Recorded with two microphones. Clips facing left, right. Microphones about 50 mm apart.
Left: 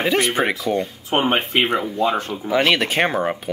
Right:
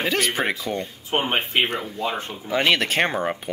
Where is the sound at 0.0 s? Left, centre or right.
Centre.